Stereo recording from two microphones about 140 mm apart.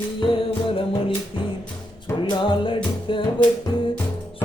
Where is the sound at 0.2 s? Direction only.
40° left (ahead or behind).